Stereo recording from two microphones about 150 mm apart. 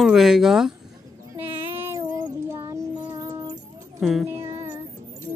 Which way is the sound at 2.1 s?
20° right (ahead or behind).